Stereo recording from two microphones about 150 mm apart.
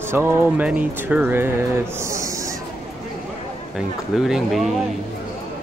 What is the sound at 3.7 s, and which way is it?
Speech, 5° right (ahead or behind).